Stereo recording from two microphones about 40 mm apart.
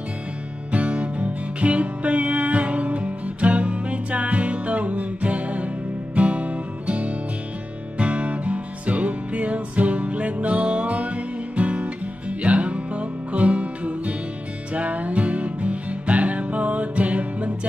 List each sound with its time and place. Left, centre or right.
0.7 s music: right